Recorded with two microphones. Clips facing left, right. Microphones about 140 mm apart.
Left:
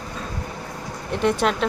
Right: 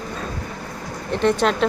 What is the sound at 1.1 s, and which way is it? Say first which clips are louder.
Speech: right 2 dB; 10° left (ahead or behind).